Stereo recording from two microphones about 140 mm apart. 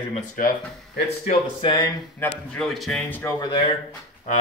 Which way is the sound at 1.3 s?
35° left (ahead or behind).